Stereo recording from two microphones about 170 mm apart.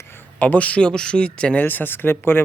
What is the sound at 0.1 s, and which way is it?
A man's voice, 10° left (ahead or behind).